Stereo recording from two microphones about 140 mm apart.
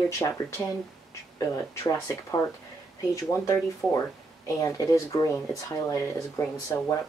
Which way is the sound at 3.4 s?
20° left (ahead or behind).